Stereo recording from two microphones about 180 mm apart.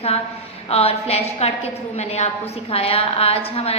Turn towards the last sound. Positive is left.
turn(degrees=35)  # may be behind; listen again after turning